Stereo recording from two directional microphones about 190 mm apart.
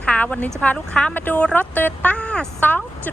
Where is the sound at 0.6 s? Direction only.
5° left (ahead or behind).